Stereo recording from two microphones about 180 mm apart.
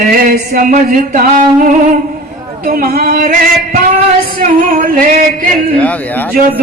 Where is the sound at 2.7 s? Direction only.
55° right (ahead or behind).